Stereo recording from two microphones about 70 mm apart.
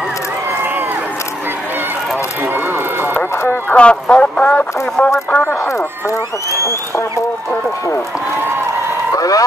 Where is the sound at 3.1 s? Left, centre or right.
Left.